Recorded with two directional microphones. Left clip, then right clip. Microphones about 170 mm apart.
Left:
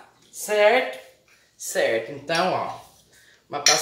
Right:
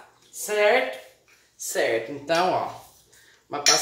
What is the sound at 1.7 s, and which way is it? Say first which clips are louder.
Cutlery: left 2 dB; 15° right (ahead or behind).